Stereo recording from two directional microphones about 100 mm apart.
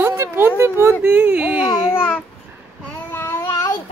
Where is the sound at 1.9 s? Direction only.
20° left (ahead or behind).